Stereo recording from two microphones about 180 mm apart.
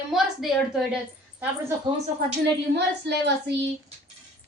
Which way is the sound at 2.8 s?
70° right (ahead or behind).